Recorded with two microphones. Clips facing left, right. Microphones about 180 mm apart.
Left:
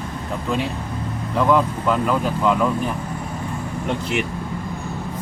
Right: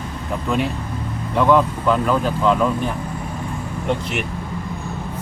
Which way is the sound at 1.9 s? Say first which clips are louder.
Right 2 dB; 5° left (ahead or behind).